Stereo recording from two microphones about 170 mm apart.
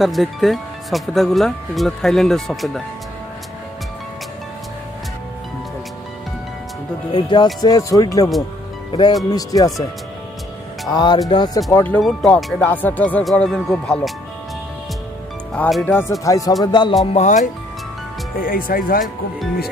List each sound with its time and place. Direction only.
0.0 s speech: centre (ahead or behind)
7.1 s music: 25° left (ahead or behind)
9.3 s music: 20° left (ahead or behind)
10.9 s music: 25° left (ahead or behind)
11.7 s speech: 10° left (ahead or behind)
15.5 s speech: 10° left (ahead or behind)
16.6 s music: 25° left (ahead or behind)
17.0 s speech: 40° left (ahead or behind)
18.4 s speech: 55° left (ahead or behind)